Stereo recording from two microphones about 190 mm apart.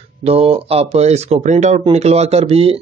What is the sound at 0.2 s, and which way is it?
Speech, 30° right (ahead or behind).